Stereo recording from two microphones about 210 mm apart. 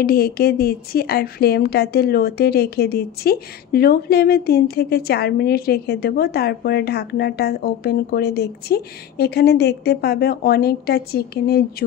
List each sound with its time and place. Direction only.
0.0 s a woman's voice: 45° left (ahead or behind)